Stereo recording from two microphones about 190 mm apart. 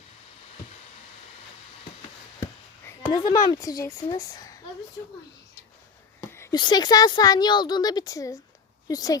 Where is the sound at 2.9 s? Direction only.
20° left (ahead or behind).